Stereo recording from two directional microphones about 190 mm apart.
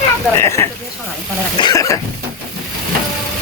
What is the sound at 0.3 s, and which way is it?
Speech, 15° left (ahead or behind).